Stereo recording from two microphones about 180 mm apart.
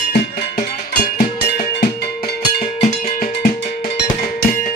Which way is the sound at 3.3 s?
70° left (ahead or behind).